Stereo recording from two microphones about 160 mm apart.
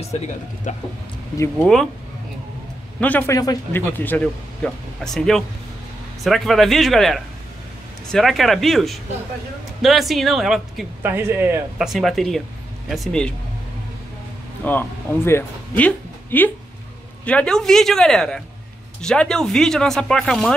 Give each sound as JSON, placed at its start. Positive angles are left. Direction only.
{"t": 0.7, "sound": "a sound", "side_deg": 50}
{"t": 1.6, "sound": "speech", "side_deg": 0}
{"t": 3.0, "sound": "a man's voice", "side_deg": 10}
{"t": 11.0, "sound": "speech", "side_deg": -15}
{"t": 11.9, "sound": "speech", "side_deg": 0}
{"t": 14.6, "sound": "speech", "side_deg": 10}